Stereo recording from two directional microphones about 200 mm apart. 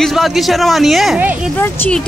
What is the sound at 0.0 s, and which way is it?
Speech, centre (ahead or behind).